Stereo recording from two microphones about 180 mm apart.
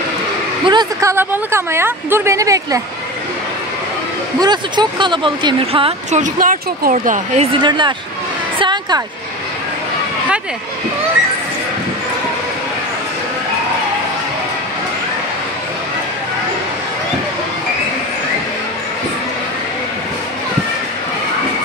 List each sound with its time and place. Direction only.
0.7 s speech: 25° right (ahead or behind)
1.1 s speech: 15° right (ahead or behind)
4.4 s speech: 25° right (ahead or behind)
6.2 s speech: 50° right (ahead or behind)
7.6 s speech: 25° right (ahead or behind)
8.5 s a sound: 25° right (ahead or behind)